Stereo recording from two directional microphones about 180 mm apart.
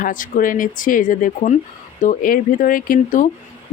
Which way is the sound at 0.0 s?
50° left (ahead or behind).